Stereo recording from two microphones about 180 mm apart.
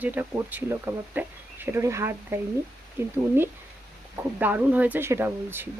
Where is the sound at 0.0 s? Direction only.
10° right (ahead or behind).